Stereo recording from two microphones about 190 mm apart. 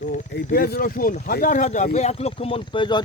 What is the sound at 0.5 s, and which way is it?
Speech, 50° left (ahead or behind).